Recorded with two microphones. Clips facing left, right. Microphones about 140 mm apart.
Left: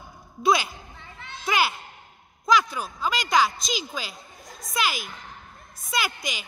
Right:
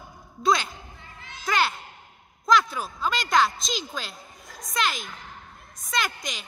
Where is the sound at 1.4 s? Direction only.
10° left (ahead or behind).